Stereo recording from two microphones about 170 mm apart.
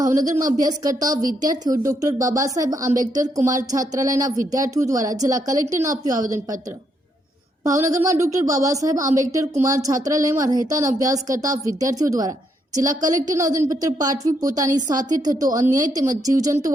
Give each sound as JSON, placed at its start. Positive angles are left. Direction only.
{"t": 0.0, "sound": "a woman's voice", "side_deg": -20}
{"t": 7.6, "sound": "a woman's voice", "side_deg": -20}